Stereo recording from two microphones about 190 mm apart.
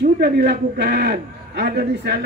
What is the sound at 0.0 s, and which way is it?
Speech, 55° right (ahead or behind).